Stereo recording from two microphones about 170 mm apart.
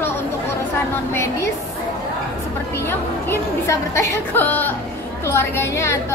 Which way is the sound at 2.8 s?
15° left (ahead or behind).